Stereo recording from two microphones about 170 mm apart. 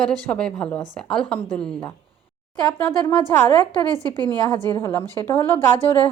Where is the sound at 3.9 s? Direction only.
20° right (ahead or behind).